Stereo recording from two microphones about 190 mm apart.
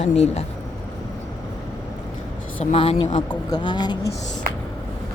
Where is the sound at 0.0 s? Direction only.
35° left (ahead or behind).